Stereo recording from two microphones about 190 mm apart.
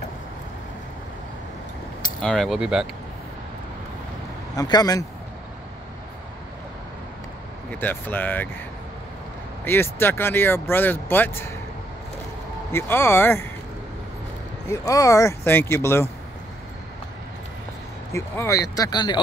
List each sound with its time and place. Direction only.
2.2 s speech: centre (ahead or behind)
4.6 s speech: 20° left (ahead or behind)
7.7 s speech: 10° left (ahead or behind)
9.7 s speech: 10° left (ahead or behind)
12.7 s speech: 10° left (ahead or behind)
14.7 s speech: 15° left (ahead or behind)
18.1 s speech: 15° left (ahead or behind)